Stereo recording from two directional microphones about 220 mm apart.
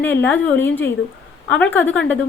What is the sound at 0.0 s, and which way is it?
A woman's voice, 10° left (ahead or behind).